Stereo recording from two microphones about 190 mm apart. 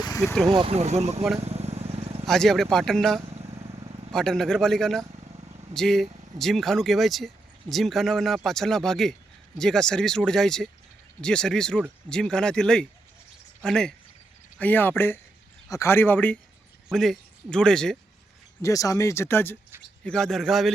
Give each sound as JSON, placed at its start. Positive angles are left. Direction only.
{"t": 0.4, "sound": "speech", "side_deg": -25}
{"t": 1.4, "sound": "vehicle", "side_deg": -35}
{"t": 2.2, "sound": "speech", "side_deg": 0}
{"t": 3.2, "sound": "vehicle", "side_deg": -30}
{"t": 4.1, "sound": "speech", "side_deg": 5}
{"t": 5.1, "sound": "vehicle", "side_deg": -30}
{"t": 5.7, "sound": "speech", "side_deg": 0}
{"t": 18.6, "sound": "speech", "side_deg": 20}